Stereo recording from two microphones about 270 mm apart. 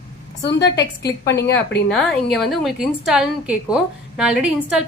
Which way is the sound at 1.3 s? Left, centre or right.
Left.